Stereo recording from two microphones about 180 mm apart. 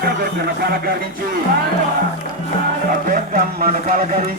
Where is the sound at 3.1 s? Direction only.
50° right (ahead or behind).